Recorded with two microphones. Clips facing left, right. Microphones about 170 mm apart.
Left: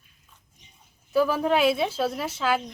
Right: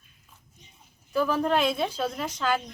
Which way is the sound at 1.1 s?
5° left (ahead or behind).